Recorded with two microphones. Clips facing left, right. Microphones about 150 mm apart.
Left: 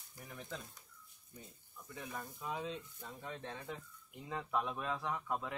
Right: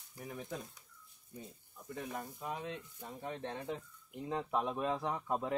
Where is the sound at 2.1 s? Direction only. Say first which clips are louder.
Left 3 dB; 20° right (ahead or behind).